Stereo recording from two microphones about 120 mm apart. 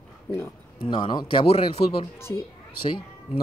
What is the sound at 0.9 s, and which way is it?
Speech, 40° left (ahead or behind).